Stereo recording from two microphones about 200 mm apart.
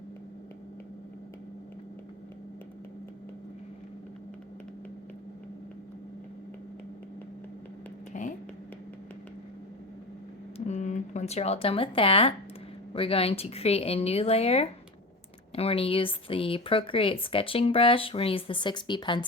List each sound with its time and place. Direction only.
8.1 s vehicle: 35° left (ahead or behind)
10.7 s speech: 35° left (ahead or behind)